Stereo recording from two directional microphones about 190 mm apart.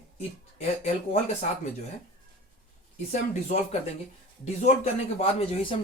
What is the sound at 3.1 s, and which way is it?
Speech, 40° left (ahead or behind).